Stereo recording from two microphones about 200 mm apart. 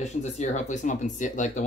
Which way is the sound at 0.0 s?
35° left (ahead or behind).